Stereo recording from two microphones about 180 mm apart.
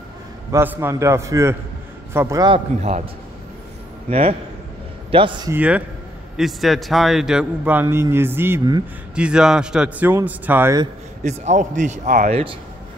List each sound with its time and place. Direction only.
0.5 s a man's voice: 15° right (ahead or behind)
4.1 s a man's voice: 35° right (ahead or behind)
5.5 s a man's voice: 10° right (ahead or behind)
9.1 s a man's voice: 5° right (ahead or behind)
11.2 s speech: 40° right (ahead or behind)